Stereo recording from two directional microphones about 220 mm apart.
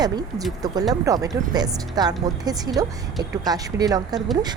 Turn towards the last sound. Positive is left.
turn(degrees=-15)  # may be behind; listen again after turning